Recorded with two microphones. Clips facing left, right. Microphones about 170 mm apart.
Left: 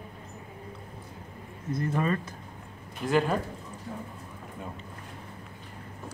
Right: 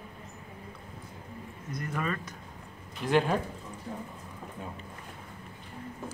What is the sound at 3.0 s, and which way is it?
Speech, centre (ahead or behind).